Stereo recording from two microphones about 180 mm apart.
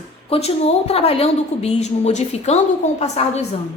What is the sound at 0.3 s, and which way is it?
A woman's voice, 35° left (ahead or behind).